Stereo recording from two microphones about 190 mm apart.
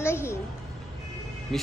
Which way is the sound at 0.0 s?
15° left (ahead or behind).